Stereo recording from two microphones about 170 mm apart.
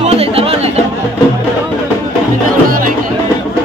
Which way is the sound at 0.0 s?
35° right (ahead or behind).